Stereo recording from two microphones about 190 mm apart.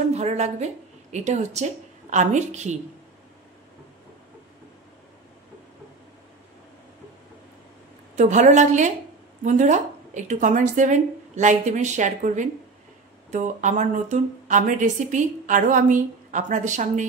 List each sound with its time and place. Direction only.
0.1 s a woman's voice: 35° right (ahead or behind)
8.2 s speech: 40° right (ahead or behind)